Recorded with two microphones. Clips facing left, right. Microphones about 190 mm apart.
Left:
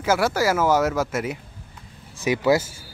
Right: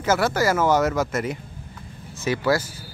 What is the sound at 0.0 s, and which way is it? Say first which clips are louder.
Speech: even; 10° left (ahead or behind).